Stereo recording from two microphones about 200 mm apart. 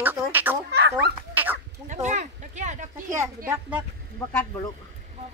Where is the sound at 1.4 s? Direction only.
10° right (ahead or behind).